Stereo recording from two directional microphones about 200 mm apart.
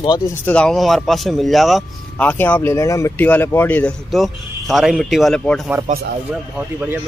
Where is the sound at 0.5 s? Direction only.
5° left (ahead or behind).